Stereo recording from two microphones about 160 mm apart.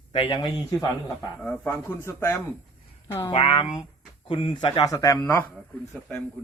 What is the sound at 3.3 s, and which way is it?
A man's voice, 35° left (ahead or behind).